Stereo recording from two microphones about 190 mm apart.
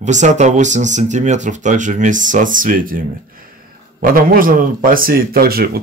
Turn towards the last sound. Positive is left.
turn(degrees=-55)  # may be behind; listen again after turning